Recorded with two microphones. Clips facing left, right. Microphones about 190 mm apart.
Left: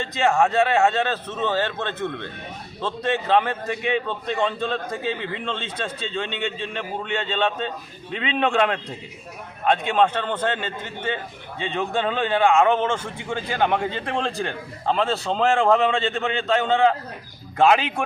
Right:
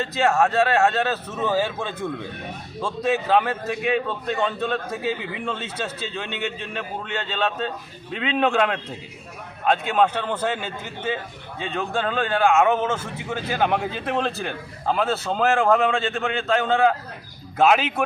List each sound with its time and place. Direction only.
0.0 s a man's voice: centre (ahead or behind)